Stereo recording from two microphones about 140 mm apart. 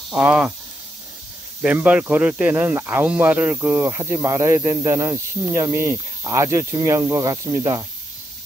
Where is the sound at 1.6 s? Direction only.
10° right (ahead or behind).